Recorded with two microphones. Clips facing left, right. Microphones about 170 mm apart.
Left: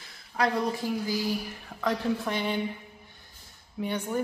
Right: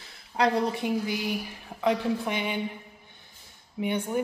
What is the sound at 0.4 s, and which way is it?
A woman's voice, 25° right (ahead or behind).